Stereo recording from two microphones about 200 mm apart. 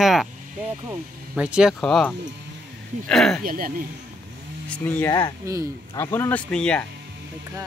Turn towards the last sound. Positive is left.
turn(degrees=5)  # may be behind; listen again after turning